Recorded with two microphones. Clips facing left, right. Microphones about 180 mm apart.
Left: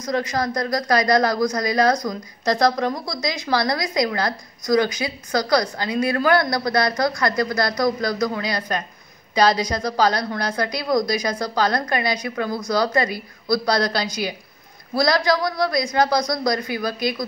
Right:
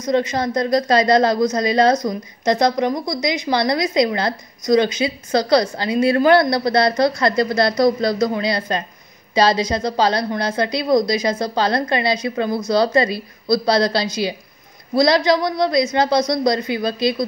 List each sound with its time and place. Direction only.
0.0 s a woman's voice: 20° right (ahead or behind)